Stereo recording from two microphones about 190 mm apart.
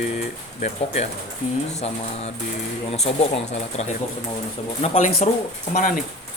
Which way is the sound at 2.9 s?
30° left (ahead or behind).